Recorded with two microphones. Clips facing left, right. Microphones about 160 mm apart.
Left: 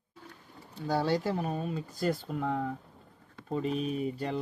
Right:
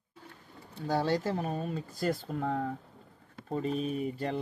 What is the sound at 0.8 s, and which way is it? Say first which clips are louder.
Speech: left 1 dB; 45° right (ahead or behind).